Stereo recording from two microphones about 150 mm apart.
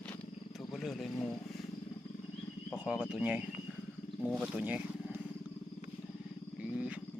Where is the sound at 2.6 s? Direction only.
5° right (ahead or behind).